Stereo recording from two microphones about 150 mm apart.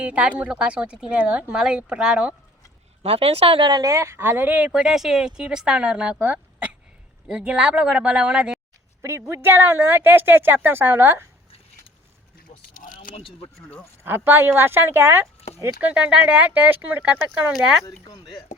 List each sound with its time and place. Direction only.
0.0 s speech: 10° right (ahead or behind)
3.0 s speech: 40° right (ahead or behind); by 8.5 s 5° right (ahead or behind)
9.0 s speech: 15° right (ahead or behind)
12.7 s a sound: 65° left (ahead or behind)
13.1 s speech: 40° left (ahead or behind)
14.0 s speech: 15° right (ahead or behind)
17.5 s speech: centre (ahead or behind)